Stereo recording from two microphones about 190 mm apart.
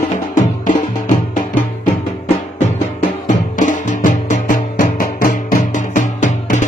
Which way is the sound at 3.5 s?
40° left (ahead or behind).